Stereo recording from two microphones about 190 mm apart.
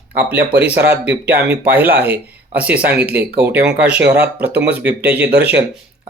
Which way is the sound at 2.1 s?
5° right (ahead or behind).